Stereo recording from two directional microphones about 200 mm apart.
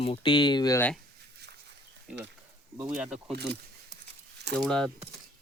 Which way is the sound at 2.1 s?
5° right (ahead or behind).